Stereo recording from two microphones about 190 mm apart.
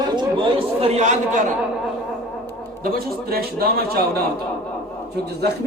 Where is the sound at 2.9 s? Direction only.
50° right (ahead or behind).